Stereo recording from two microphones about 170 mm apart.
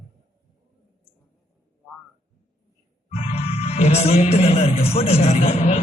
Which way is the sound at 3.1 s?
40° left (ahead or behind).